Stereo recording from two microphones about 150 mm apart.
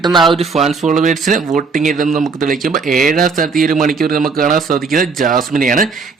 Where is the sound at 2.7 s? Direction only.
Centre (ahead or behind).